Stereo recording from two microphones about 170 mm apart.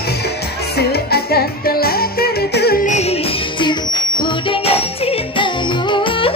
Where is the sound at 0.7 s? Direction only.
70° left (ahead or behind).